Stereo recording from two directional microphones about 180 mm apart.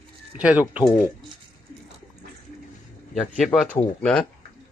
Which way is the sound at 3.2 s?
Centre (ahead or behind).